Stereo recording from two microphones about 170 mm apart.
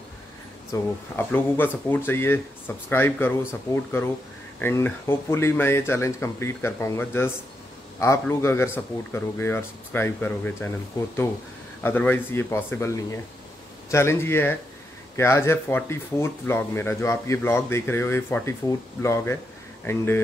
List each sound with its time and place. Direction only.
0.7 s speech: 15° left (ahead or behind)
4.6 s speech: 15° left (ahead or behind)
11.8 s speech: 10° left (ahead or behind)